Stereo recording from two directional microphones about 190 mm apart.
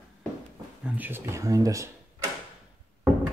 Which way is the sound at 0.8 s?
10° right (ahead or behind).